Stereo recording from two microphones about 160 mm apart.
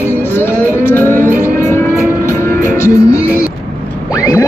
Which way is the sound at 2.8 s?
15° left (ahead or behind).